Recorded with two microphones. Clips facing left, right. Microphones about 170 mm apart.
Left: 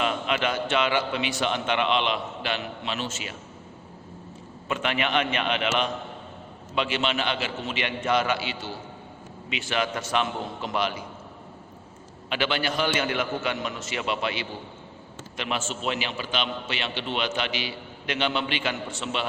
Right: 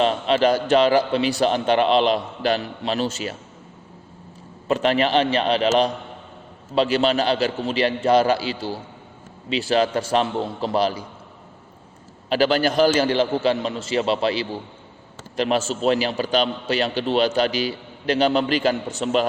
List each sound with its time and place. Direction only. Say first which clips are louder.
0.0 s a man's voice: right 8 dB; 35° right (ahead or behind)
4.7 s a man's voice: right 7 dB; 35° right (ahead or behind)
12.3 s a man's voice: right 8 dB; 40° right (ahead or behind)